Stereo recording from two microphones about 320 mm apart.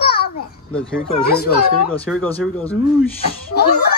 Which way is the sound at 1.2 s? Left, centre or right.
Left.